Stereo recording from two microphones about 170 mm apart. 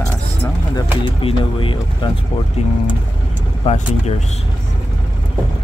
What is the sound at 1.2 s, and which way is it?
Speech, 30° left (ahead or behind).